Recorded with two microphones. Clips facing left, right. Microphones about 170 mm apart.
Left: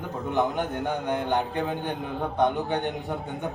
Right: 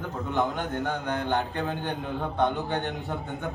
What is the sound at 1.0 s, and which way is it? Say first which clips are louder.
Speech: left 2 dB; 15° left (ahead or behind).